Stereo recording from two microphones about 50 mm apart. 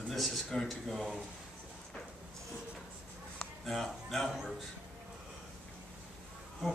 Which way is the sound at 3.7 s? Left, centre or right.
Centre.